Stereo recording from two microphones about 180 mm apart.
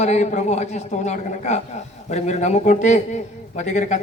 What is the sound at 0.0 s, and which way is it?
A man's voice, 40° left (ahead or behind).